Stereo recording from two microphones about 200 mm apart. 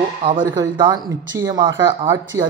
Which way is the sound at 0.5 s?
15° right (ahead or behind).